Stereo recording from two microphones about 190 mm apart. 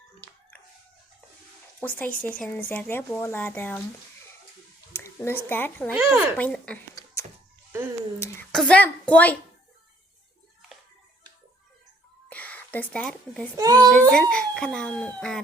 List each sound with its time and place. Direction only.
1.8 s speech: 10° left (ahead or behind)
4.9 s speech: 15° left (ahead or behind)
5.9 s speech: 5° right (ahead or behind)
6.3 s speech: 5° left (ahead or behind)
8.5 s speech: 5° left (ahead or behind)
12.3 s speech: 10° left (ahead or behind)
13.6 s a child's voice: 20° right (ahead or behind)
14.1 s speech: 5° left (ahead or behind)